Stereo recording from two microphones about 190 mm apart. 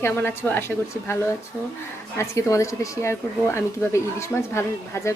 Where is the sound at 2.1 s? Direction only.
15° left (ahead or behind).